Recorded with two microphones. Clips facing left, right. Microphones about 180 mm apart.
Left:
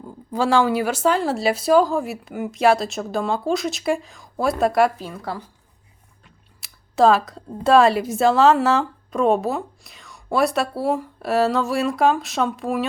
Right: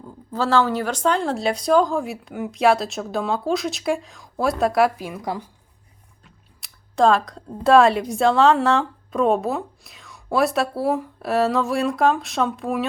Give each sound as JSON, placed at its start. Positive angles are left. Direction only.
{"t": 0.0, "sound": "a woman's voice", "side_deg": 10}
{"t": 4.9, "sound": "speech", "side_deg": -15}
{"t": 6.2, "sound": "a sound", "side_deg": 0}
{"t": 7.5, "sound": "a woman's voice", "side_deg": 0}